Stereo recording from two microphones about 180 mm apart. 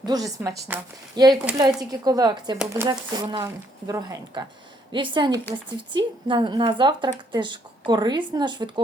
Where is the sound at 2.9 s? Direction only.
25° right (ahead or behind).